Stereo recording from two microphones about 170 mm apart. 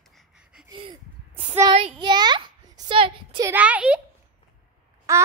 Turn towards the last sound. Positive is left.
turn(degrees=-15)  # may be behind; listen again after turning